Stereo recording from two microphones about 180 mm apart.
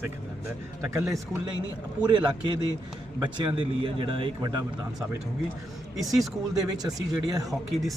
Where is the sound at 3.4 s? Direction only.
30° right (ahead or behind).